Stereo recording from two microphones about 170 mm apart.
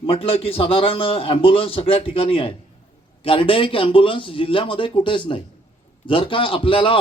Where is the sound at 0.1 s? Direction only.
35° left (ahead or behind).